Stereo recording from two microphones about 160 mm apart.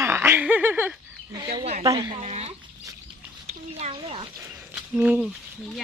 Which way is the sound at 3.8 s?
35° right (ahead or behind).